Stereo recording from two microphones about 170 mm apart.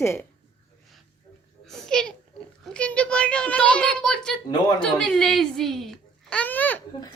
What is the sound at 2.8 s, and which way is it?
A woman's voice, 5° left (ahead or behind).